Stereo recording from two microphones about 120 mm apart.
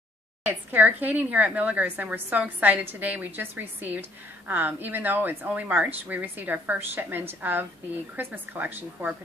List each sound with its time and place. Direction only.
0.5 s speech: 15° right (ahead or behind)